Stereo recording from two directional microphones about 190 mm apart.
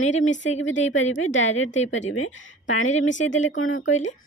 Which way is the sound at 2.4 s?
90° left.